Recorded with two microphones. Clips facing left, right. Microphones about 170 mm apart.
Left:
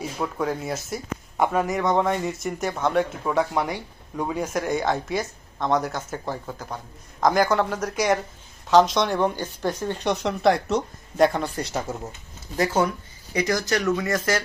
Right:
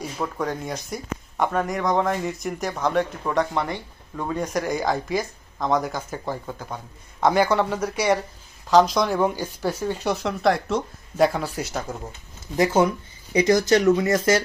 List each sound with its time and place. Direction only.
0.0 s speech: centre (ahead or behind)
12.5 s speech: 20° right (ahead or behind)